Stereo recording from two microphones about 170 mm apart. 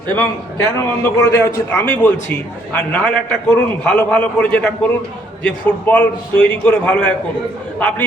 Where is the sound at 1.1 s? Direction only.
15° left (ahead or behind).